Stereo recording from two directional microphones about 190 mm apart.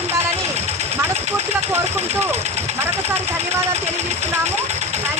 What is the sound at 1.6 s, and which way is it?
Speech, 35° right (ahead or behind).